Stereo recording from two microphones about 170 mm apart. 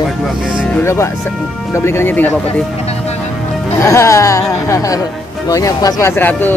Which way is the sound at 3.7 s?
15° left (ahead or behind).